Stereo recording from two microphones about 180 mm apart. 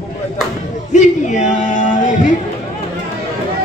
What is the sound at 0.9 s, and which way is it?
Speech, 40° left (ahead or behind).